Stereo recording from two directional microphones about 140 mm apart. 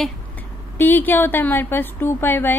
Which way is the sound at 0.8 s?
15° left (ahead or behind).